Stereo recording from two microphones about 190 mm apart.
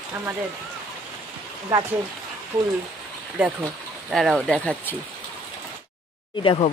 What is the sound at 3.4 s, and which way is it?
Speech, 5° right (ahead or behind).